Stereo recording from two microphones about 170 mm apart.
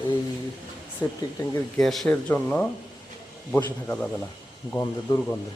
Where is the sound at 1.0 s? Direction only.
15° left (ahead or behind).